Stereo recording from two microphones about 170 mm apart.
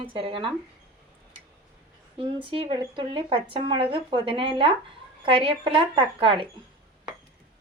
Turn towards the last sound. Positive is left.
turn(degrees=-30)  # may be behind; listen again after turning